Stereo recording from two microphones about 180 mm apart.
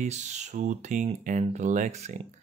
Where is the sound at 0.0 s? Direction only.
40° right (ahead or behind).